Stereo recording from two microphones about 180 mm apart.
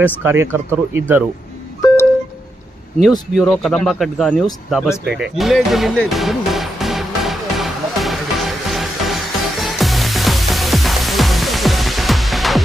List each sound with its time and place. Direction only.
0.0 s speech: 10° right (ahead or behind)
3.3 s speech: 5° left (ahead or behind)
5.2 s music: centre (ahead or behind)